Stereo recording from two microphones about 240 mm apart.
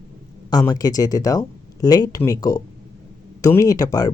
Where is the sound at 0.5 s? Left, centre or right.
Centre.